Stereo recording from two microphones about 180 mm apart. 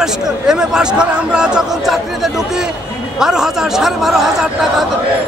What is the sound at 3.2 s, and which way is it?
Speech, 5° right (ahead or behind).